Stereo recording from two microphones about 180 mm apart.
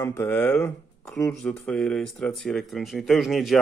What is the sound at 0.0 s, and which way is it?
Speech, 10° left (ahead or behind).